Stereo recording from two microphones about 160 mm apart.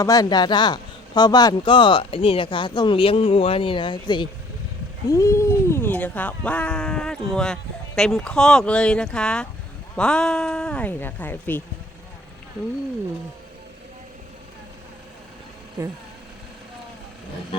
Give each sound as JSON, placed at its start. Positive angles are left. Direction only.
{"t": 0.0, "sound": "speech", "side_deg": 25}